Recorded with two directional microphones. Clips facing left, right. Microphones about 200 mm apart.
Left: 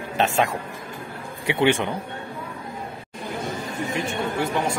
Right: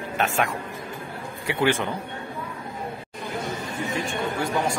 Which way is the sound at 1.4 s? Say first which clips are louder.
Left 3 dB; 20° left (ahead or behind).